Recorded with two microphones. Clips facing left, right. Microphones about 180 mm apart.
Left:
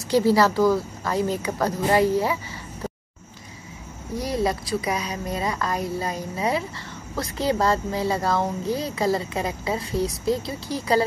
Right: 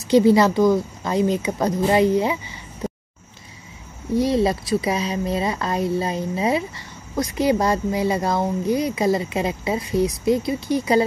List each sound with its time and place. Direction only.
0.1 s speech: 20° right (ahead or behind)
4.2 s speech: 25° right (ahead or behind)